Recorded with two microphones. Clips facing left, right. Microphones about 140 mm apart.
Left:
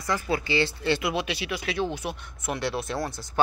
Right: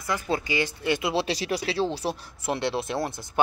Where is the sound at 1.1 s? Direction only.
35° right (ahead or behind).